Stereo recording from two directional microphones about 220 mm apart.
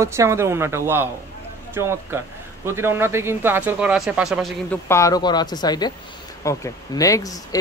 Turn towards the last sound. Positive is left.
turn(degrees=15)  # may be behind; listen again after turning